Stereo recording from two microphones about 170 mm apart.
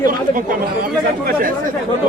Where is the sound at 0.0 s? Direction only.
55° right (ahead or behind).